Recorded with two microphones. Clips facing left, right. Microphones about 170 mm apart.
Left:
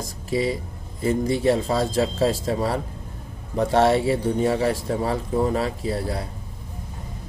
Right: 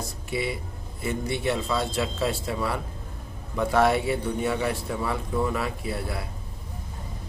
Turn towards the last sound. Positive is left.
turn(degrees=35)  # may be behind; listen again after turning